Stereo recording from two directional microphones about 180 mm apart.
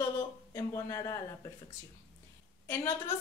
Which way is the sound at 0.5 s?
20° left (ahead or behind).